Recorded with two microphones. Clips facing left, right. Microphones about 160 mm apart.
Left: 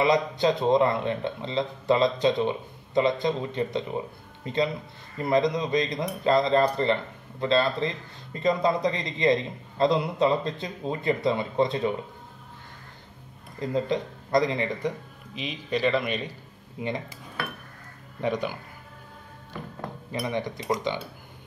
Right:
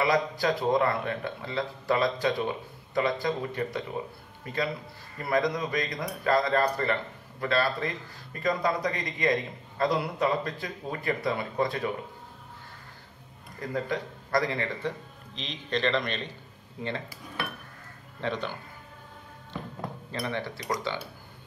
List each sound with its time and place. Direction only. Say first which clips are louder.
0.0 s speech: left 3 dB; 20° left (ahead or behind)
13.6 s a man's voice: left 5 dB; 20° left (ahead or behind)
18.2 s a man's voice: left 4 dB; 10° left (ahead or behind)
20.1 s a man's voice: left 4 dB; 15° left (ahead or behind)